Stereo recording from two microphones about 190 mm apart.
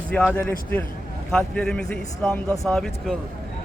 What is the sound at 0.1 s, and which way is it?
A man's voice, 5° left (ahead or behind).